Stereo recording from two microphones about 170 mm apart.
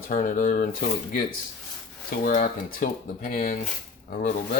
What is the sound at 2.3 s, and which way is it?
Speech, 50° left (ahead or behind).